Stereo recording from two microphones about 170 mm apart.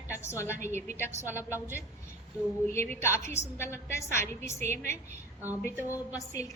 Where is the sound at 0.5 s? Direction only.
45° right (ahead or behind).